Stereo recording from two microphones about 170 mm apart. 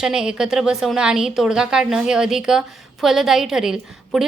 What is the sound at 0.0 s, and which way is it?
A woman's voice, 5° right (ahead or behind).